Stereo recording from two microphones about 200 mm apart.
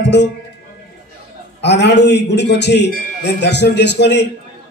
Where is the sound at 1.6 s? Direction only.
60° left (ahead or behind).